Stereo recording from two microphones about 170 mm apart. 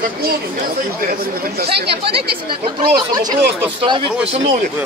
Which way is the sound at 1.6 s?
70° right (ahead or behind).